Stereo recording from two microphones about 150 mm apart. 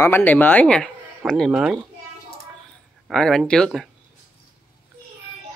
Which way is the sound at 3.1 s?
5° left (ahead or behind).